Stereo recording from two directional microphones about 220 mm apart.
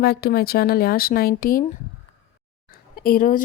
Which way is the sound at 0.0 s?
45° left (ahead or behind).